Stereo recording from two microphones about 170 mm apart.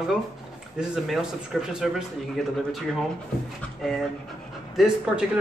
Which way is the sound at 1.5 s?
Centre (ahead or behind).